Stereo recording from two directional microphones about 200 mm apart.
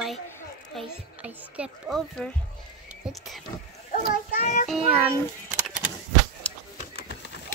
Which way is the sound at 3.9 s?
40° left (ahead or behind).